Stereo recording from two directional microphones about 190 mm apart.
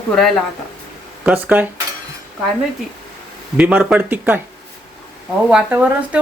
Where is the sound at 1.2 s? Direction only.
10° right (ahead or behind).